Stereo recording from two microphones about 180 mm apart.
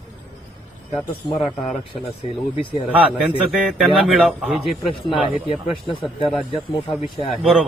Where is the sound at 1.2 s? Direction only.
25° left (ahead or behind).